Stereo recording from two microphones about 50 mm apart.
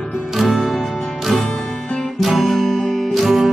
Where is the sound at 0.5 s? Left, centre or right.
Centre.